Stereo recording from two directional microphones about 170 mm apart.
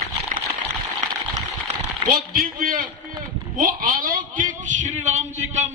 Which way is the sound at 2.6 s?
55° right (ahead or behind).